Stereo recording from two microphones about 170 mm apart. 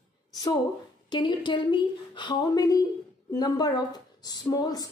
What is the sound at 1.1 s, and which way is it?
Speech, 25° left (ahead or behind).